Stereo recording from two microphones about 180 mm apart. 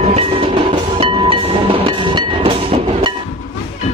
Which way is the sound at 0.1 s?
30° right (ahead or behind).